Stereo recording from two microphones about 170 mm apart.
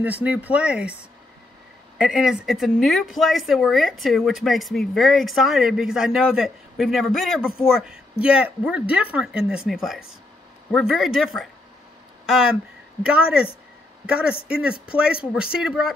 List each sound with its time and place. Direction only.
0.0 s speech: 10° right (ahead or behind)
2.0 s speech: 5° right (ahead or behind)
14.5 s speech: 5° right (ahead or behind)